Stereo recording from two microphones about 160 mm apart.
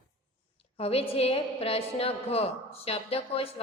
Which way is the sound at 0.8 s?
35° left (ahead or behind).